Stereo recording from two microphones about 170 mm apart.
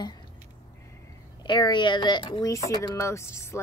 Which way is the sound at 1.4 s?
25° left (ahead or behind).